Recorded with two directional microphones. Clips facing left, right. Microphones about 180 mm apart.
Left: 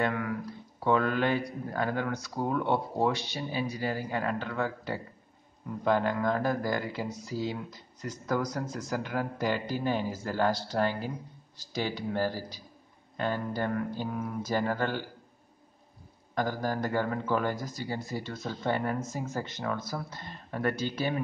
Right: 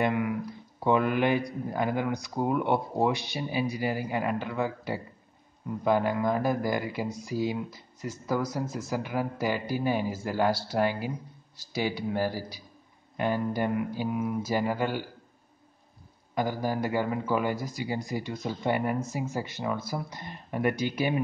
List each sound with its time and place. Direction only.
0.0 s speech: 15° right (ahead or behind)
16.3 s speech: 10° right (ahead or behind)